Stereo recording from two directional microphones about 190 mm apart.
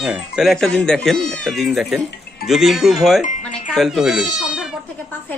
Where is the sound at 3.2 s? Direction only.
40° left (ahead or behind).